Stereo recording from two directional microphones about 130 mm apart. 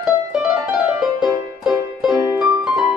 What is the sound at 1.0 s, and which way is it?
Music, 5° right (ahead or behind).